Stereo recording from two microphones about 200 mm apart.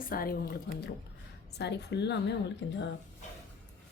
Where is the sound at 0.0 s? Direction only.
45° left (ahead or behind).